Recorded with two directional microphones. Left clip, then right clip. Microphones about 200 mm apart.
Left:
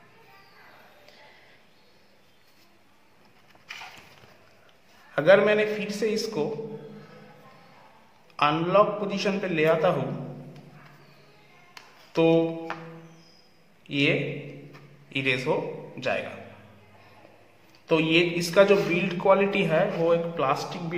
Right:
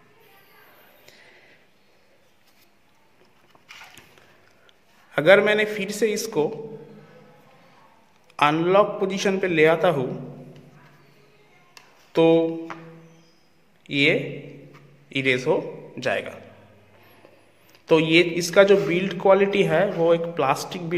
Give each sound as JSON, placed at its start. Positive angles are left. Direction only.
{"t": 5.1, "sound": "a man's voice", "side_deg": -35}
{"t": 8.4, "sound": "a man's voice", "side_deg": -35}
{"t": 12.1, "sound": "a sound", "side_deg": -30}
{"t": 13.8, "sound": "a man's voice", "side_deg": -30}
{"t": 17.8, "sound": "a man's voice", "side_deg": -40}